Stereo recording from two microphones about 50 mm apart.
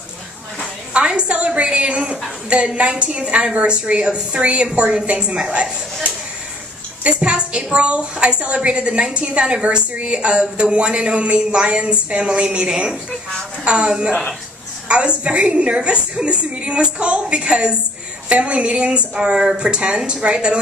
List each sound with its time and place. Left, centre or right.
1.0 s a woman's voice: centre
7.0 s a woman's voice: right